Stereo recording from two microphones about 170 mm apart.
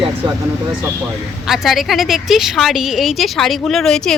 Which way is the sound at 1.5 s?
Centre (ahead or behind).